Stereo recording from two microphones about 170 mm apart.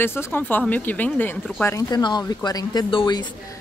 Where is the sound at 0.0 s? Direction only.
15° left (ahead or behind).